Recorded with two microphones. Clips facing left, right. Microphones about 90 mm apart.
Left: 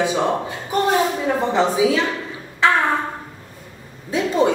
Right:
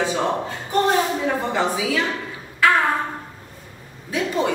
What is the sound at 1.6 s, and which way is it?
Speech, 25° left (ahead or behind).